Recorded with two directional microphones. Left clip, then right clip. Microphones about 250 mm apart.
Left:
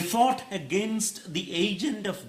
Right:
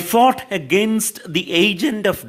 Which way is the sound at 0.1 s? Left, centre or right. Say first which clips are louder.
Right 10 dB; right.